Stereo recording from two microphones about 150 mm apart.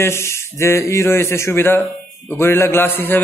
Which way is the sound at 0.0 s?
20° left (ahead or behind).